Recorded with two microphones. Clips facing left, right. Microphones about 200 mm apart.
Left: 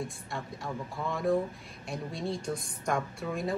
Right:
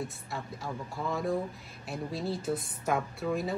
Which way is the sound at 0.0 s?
Centre (ahead or behind).